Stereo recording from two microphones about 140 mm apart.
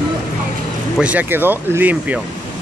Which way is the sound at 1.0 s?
10° right (ahead or behind).